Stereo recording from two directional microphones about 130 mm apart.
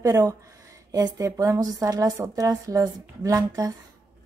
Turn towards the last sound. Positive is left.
turn(degrees=-25)  # may be behind; listen again after turning